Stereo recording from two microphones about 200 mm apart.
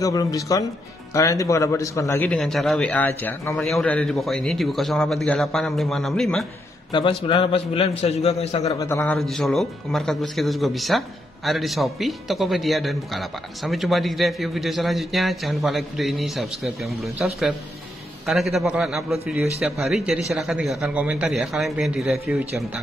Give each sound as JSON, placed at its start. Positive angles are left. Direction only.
{"t": 0.0, "sound": "a man's voice", "side_deg": 15}
{"t": 6.9, "sound": "a man's voice", "side_deg": 25}
{"t": 8.7, "sound": "a man's voice", "side_deg": 15}